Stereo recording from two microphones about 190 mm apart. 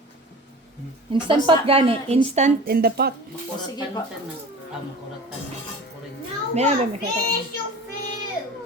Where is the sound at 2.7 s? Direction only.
55° right (ahead or behind).